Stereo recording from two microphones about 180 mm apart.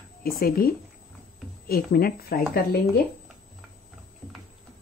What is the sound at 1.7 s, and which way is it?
Speech, 55° left (ahead or behind).